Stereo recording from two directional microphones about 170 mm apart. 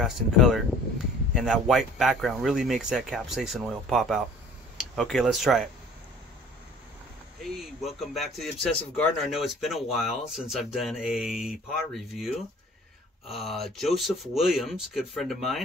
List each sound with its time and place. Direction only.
0.0 s speech: centre (ahead or behind)
7.4 s speech: centre (ahead or behind)